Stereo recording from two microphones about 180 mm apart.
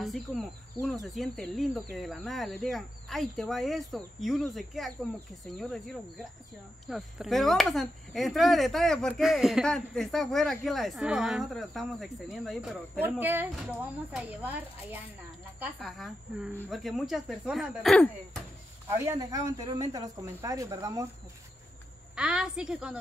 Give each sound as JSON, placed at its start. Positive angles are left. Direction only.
{"t": 0.0, "sound": "a woman's voice", "side_deg": 0}
{"t": 18.9, "sound": "speech", "side_deg": -15}
{"t": 22.1, "sound": "speech", "side_deg": -5}